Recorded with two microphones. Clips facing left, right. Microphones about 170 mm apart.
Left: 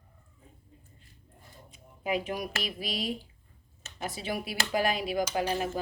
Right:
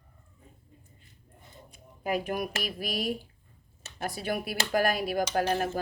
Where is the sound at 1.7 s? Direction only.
50° right (ahead or behind).